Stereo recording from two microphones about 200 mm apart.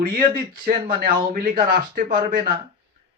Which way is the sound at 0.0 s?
50° right (ahead or behind).